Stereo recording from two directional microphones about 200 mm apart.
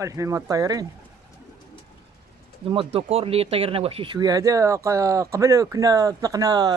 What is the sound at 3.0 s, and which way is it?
Speech, 30° right (ahead or behind).